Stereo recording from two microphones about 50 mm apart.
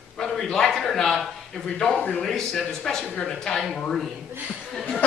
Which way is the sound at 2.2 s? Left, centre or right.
Centre.